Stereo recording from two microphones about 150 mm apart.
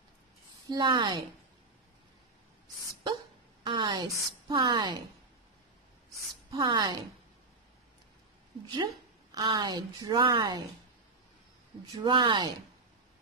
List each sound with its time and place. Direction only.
0.7 s a woman's voice: 30° right (ahead or behind)
3.6 s a woman's voice: 30° right (ahead or behind)
6.5 s a woman's voice: 30° right (ahead or behind)
9.3 s a woman's voice: 30° right (ahead or behind)
11.9 s speech: 30° right (ahead or behind)